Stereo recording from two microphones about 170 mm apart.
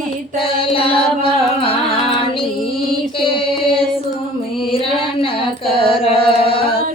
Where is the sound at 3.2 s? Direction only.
30° left (ahead or behind).